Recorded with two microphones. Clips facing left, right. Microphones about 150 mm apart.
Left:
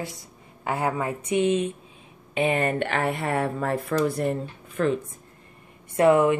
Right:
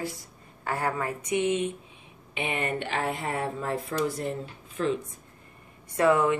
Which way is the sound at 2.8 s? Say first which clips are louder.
Left 4 dB; 65° left (ahead or behind).